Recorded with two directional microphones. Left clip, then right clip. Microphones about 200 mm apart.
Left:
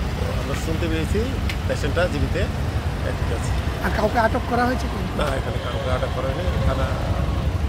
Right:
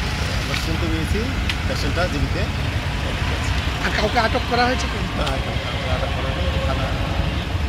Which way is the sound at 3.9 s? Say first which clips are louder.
Even; 30° left (ahead or behind).